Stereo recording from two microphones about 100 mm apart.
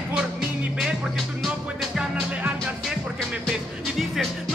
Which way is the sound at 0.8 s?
5° right (ahead or behind).